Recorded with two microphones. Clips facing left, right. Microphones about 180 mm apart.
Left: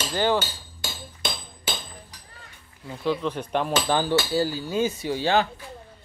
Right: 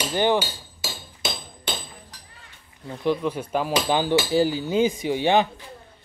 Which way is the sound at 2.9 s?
15° right (ahead or behind).